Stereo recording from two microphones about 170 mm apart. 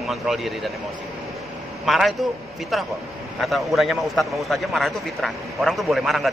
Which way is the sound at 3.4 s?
Centre (ahead or behind).